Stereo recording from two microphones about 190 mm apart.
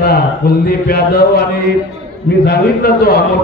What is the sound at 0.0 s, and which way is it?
A man's voice, 55° left (ahead or behind).